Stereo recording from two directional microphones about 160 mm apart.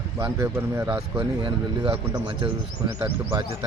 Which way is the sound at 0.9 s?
25° right (ahead or behind).